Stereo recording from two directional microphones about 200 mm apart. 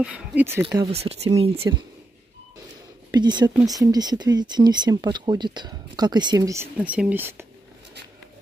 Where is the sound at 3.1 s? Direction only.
20° right (ahead or behind).